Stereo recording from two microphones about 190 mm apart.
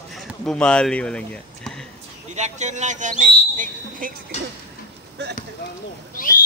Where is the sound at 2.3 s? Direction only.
40° right (ahead or behind).